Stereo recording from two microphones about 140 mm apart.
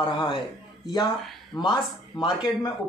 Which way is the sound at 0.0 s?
35° left (ahead or behind).